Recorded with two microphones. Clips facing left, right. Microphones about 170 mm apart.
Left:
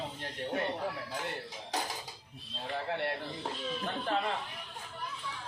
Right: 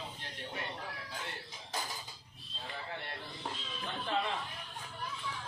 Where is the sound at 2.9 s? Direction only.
75° left (ahead or behind).